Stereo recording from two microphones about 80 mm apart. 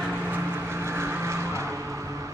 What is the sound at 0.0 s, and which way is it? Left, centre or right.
Vehicle, right.